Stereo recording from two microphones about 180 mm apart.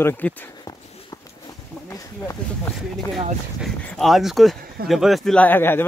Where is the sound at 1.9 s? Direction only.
15° left (ahead or behind).